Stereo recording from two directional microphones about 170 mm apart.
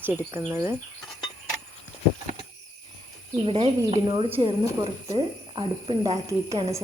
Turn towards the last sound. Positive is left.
turn(degrees=-25)  # may be behind; listen again after turning